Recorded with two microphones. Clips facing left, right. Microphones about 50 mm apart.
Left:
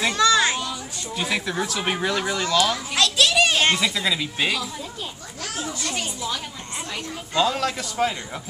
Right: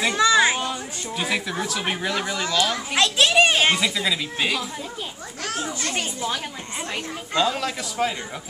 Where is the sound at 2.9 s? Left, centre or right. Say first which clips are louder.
Right 2 dB; right.